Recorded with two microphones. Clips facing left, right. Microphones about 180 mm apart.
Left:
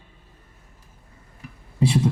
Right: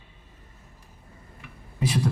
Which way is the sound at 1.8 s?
25° left (ahead or behind).